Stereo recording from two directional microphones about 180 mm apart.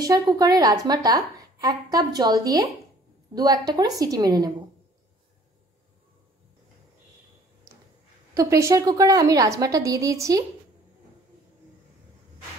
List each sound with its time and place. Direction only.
0.0 s a woman's voice: 25° right (ahead or behind)
8.4 s a woman's voice: 15° right (ahead or behind)